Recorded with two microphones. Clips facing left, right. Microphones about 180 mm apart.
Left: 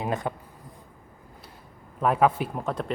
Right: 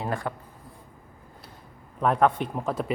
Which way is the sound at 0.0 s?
20° left (ahead or behind).